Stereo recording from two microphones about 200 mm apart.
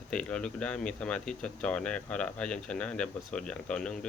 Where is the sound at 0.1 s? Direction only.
5° left (ahead or behind).